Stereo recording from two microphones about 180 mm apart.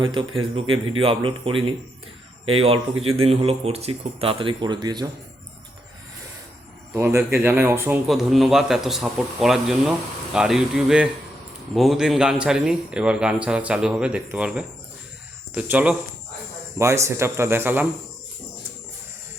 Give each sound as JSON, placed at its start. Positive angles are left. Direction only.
{"t": 0.0, "sound": "speech", "side_deg": -25}
{"t": 6.9, "sound": "a man's voice", "side_deg": -15}